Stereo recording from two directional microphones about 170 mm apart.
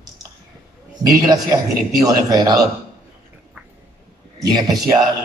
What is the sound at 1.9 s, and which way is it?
Speech, 20° right (ahead or behind).